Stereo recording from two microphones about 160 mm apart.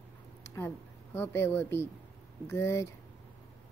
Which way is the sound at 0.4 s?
15° left (ahead or behind).